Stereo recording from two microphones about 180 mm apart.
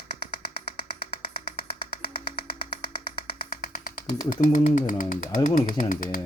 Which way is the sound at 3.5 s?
55° left (ahead or behind).